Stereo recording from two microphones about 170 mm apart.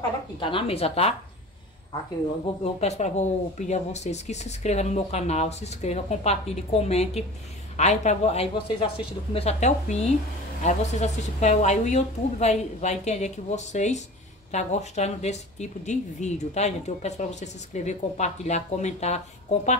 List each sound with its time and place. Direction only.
0.4 s a woman's voice: 30° left (ahead or behind)
2.6 s a woman's voice: 40° left (ahead or behind)